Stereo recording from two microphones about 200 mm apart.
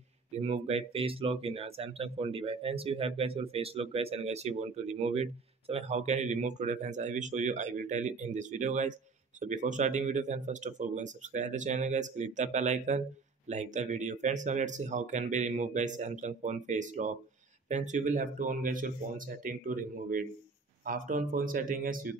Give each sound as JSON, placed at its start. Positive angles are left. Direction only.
{"t": 0.3, "sound": "speech", "side_deg": -30}